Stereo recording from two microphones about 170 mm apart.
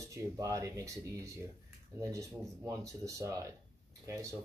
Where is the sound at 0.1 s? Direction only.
20° right (ahead or behind).